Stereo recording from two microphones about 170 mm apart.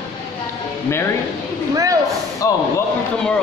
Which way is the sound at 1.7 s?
20° right (ahead or behind).